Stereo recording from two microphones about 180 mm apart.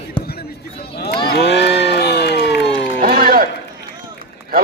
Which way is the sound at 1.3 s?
70° left (ahead or behind).